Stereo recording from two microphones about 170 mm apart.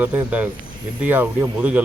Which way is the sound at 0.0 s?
10° right (ahead or behind).